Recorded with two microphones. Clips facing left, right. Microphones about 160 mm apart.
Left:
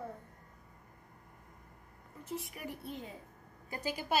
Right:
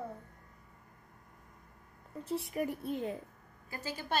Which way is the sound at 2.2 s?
35° right (ahead or behind).